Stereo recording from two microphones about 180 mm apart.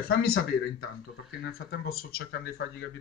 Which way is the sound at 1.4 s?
60° left (ahead or behind).